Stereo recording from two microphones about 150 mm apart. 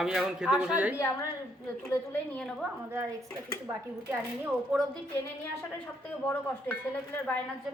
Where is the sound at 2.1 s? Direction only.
10° left (ahead or behind).